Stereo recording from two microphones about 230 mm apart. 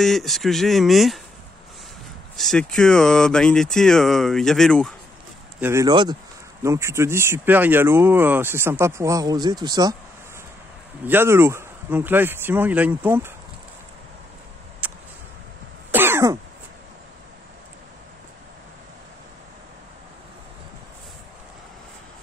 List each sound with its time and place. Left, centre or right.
0.0 s speech: centre
2.3 s speech: centre
5.6 s speech: centre
11.1 s speech: centre
14.8 s a sound: centre
15.9 s throat clearing: centre